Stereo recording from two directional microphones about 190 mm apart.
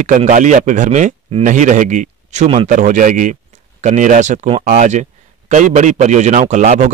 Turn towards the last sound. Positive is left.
turn(degrees=-35)  # may be behind; listen again after turning